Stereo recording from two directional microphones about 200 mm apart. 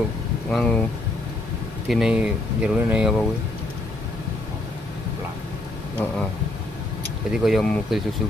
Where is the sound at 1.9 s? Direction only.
Centre (ahead or behind).